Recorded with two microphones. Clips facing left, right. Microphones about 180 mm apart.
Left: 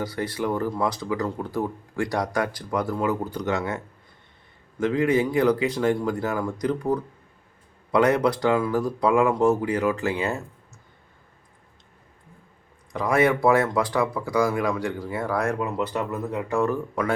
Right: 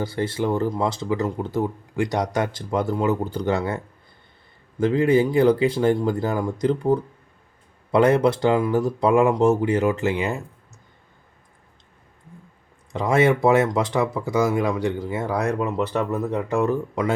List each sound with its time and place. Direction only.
0.0 s speech: 25° right (ahead or behind)
4.8 s speech: 30° right (ahead or behind)
12.9 s speech: 25° right (ahead or behind)
16.6 s speech: 20° right (ahead or behind)